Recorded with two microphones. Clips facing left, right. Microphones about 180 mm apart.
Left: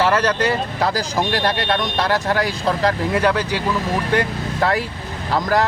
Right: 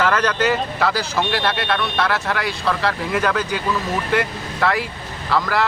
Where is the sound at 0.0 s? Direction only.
30° left (ahead or behind).